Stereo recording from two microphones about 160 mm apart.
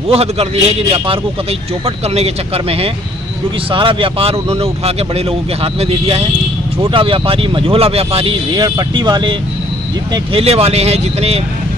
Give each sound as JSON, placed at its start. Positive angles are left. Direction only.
{"t": 0.1, "sound": "speech", "side_deg": -40}